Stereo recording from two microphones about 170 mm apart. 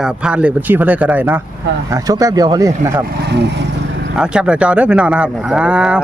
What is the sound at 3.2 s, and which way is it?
Speech, 85° right.